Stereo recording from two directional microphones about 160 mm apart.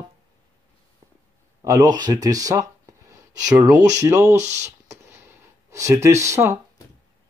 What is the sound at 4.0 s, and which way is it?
Speech, 20° right (ahead or behind).